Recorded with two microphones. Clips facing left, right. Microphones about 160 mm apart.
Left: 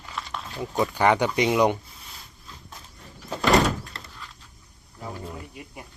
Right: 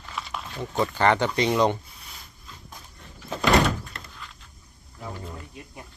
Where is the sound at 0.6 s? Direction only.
10° left (ahead or behind).